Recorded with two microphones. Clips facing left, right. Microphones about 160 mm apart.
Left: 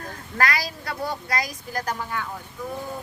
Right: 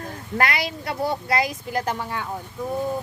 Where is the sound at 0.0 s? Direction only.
25° right (ahead or behind).